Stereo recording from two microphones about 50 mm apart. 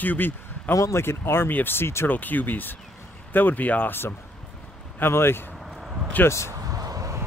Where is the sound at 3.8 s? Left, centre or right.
Left.